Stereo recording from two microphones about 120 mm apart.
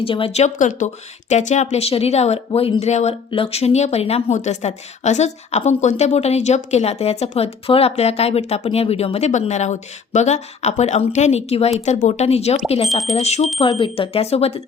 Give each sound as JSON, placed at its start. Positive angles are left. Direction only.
{"t": 0.0, "sound": "a woman's voice", "side_deg": 50}
{"t": 1.3, "sound": "a woman's voice", "side_deg": 80}
{"t": 3.2, "sound": "a woman's voice", "side_deg": 50}
{"t": 11.9, "sound": "a woman's voice", "side_deg": 75}
{"t": 13.7, "sound": "a woman's voice", "side_deg": 45}